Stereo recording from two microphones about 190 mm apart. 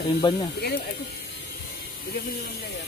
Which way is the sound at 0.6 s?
60° left (ahead or behind).